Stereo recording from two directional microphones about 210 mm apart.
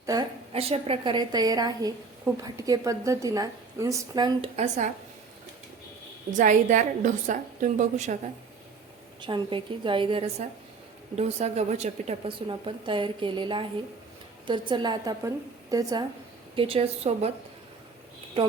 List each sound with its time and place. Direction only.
0.0 s a woman's voice: 15° right (ahead or behind)
0.5 s a woman's voice: 30° right (ahead or behind)
4.5 s a woman's voice: 35° right (ahead or behind)
6.3 s a woman's voice: 35° right (ahead or behind)
9.2 s a woman's voice: 25° right (ahead or behind)